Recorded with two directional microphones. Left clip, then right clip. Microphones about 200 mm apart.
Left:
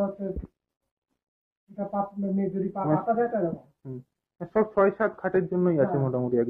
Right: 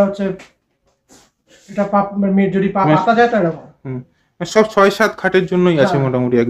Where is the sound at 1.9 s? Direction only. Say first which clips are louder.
Right 13 dB; 20° right (ahead or behind).